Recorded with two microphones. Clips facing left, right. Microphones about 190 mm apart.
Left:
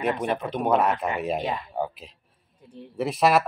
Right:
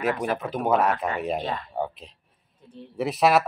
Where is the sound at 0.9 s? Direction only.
20° left (ahead or behind).